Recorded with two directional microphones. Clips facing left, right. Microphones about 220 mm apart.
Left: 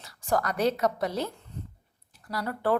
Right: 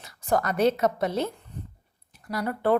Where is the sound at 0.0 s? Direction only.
20° right (ahead or behind).